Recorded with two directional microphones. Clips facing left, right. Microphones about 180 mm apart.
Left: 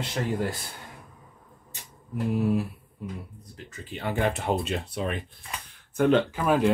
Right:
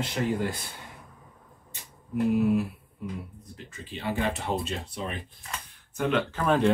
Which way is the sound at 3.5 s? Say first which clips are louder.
Left 1 dB; 50° left (ahead or behind).